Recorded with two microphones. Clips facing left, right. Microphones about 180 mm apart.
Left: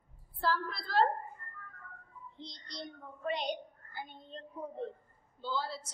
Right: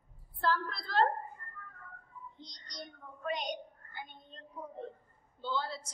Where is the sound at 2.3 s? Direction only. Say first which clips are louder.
Left 5 dB; 30° left (ahead or behind).